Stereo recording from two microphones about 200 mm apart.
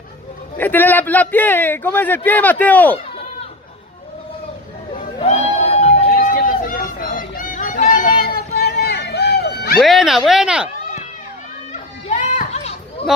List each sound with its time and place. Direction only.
0.6 s a man's voice: 10° left (ahead or behind)
4.9 s a sound: 30° left (ahead or behind); by 9.8 s 55° left (ahead or behind)
9.8 s speech: centre (ahead or behind)
11.7 s children playing: 40° left (ahead or behind)